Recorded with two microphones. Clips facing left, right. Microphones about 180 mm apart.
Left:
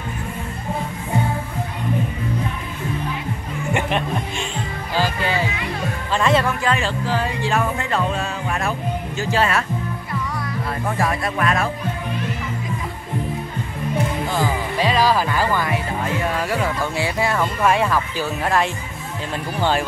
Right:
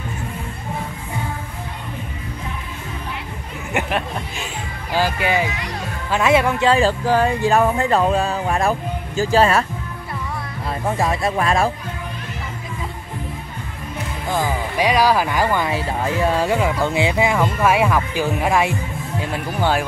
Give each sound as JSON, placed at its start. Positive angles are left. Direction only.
{"t": 4.9, "sound": "speech", "side_deg": -10}
{"t": 6.6, "sound": "music", "side_deg": -35}
{"t": 11.0, "sound": "speech", "side_deg": -25}
{"t": 14.3, "sound": "speech", "side_deg": -15}